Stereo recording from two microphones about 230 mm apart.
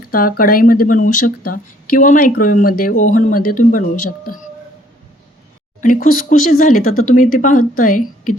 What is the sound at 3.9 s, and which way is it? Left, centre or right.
Speech, left.